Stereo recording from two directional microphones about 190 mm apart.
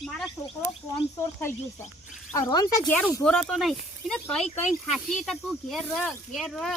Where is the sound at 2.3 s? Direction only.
20° left (ahead or behind).